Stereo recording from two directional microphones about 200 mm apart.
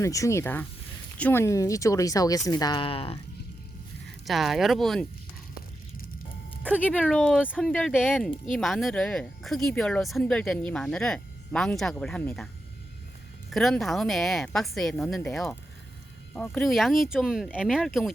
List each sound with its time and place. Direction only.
0.0 s speech: 15° left (ahead or behind)
4.0 s speech: centre (ahead or behind)
6.6 s speech: 5° right (ahead or behind)
7.7 s speech: 5° left (ahead or behind)
13.5 s speech: centre (ahead or behind)